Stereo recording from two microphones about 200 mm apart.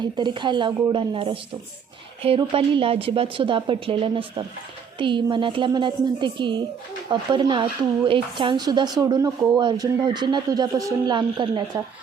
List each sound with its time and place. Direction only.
0.0 s a woman's voice: 20° right (ahead or behind)